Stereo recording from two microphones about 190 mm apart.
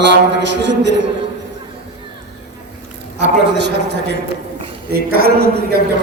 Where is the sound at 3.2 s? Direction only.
65° right (ahead or behind).